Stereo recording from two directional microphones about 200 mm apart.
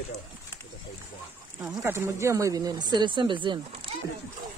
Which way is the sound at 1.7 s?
15° right (ahead or behind).